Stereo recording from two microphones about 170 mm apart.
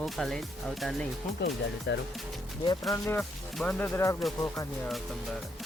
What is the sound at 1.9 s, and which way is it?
Speech, 90° left.